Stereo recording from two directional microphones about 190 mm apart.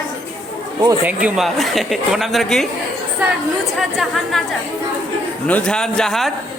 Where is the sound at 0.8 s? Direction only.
20° right (ahead or behind).